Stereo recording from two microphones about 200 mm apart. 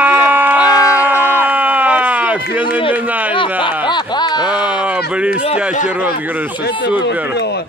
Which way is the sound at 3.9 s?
20° left (ahead or behind).